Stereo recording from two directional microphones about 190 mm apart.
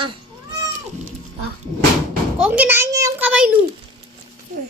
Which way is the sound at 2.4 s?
5° right (ahead or behind).